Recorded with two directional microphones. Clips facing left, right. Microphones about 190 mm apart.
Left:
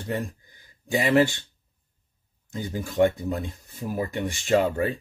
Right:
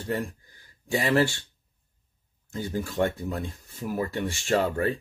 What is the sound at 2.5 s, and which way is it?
Speech, 15° left (ahead or behind).